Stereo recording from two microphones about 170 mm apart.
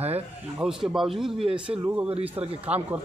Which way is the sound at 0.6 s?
5° right (ahead or behind).